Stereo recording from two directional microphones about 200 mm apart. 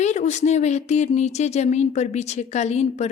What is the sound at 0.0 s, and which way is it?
A woman's voice, 35° left (ahead or behind).